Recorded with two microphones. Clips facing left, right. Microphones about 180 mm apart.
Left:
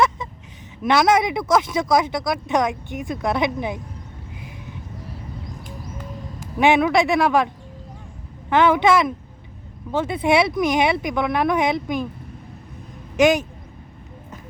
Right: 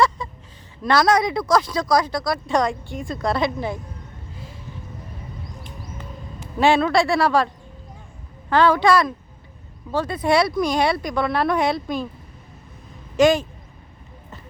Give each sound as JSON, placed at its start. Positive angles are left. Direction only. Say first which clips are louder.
{"t": 0.2, "sound": "a sound", "louder": "even", "side_deg": 20}
{"t": 0.8, "sound": "speech", "louder": "left 1 dB", "side_deg": 20}
{"t": 6.6, "sound": "speech", "louder": "left 1 dB", "side_deg": 15}
{"t": 13.1, "sound": "speech", "louder": "even", "side_deg": 15}